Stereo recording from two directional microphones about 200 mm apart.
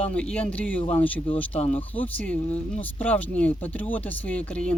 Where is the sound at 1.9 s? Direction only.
5° left (ahead or behind).